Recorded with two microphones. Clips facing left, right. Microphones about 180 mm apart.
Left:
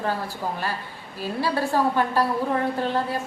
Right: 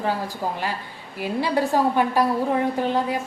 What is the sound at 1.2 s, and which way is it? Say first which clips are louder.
A woman's voice: right 3 dB; 15° right (ahead or behind).